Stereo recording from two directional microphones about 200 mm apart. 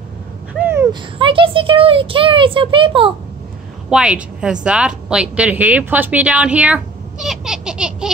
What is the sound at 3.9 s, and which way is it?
Speech, 5° right (ahead or behind).